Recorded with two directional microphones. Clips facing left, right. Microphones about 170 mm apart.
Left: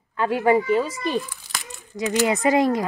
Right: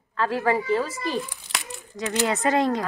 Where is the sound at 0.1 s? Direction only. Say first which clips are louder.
Left 4 dB; 20° left (ahead or behind).